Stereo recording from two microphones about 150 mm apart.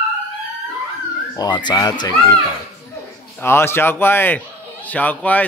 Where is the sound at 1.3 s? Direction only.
30° left (ahead or behind).